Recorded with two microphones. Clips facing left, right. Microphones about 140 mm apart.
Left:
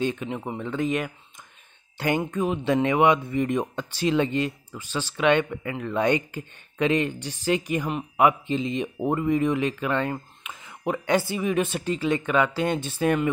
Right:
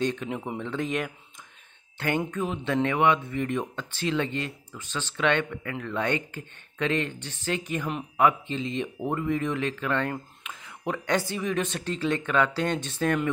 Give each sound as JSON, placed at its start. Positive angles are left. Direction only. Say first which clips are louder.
{"t": 0.0, "sound": "speech", "louder": "left 1 dB", "side_deg": 5}
{"t": 2.0, "sound": "speech", "louder": "left 3 dB", "side_deg": 15}